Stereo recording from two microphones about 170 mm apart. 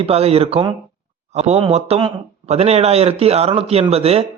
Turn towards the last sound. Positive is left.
turn(degrees=-35)  # may be behind; listen again after turning